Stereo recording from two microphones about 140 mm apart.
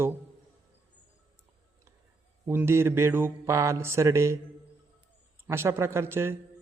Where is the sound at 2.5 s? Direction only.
15° right (ahead or behind).